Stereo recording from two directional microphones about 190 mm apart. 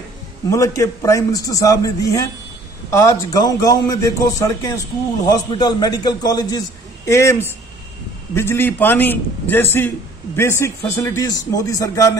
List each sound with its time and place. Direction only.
0.5 s a man's voice: 15° left (ahead or behind)